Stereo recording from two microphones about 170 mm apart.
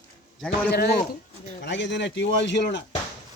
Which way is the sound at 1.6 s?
90° left.